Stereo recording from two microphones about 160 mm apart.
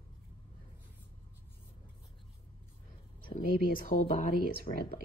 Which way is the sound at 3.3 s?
60° left (ahead or behind).